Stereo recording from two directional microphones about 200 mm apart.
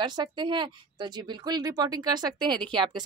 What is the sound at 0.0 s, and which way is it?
Speech, 20° right (ahead or behind).